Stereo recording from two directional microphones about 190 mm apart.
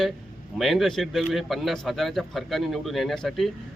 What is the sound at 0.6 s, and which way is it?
A man's voice, centre (ahead or behind).